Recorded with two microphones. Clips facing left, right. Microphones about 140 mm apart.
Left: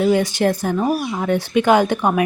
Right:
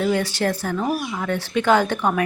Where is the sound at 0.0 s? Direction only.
15° left (ahead or behind).